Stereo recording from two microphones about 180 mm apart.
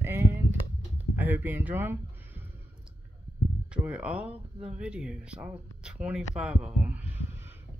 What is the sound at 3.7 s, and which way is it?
Speech, 5° right (ahead or behind).